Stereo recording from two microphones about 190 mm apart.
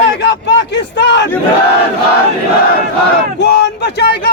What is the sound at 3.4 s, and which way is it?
Speech, 60° left (ahead or behind).